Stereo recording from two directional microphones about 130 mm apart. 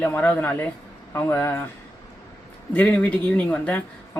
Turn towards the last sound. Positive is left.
turn(degrees=10)  # may be behind; listen again after turning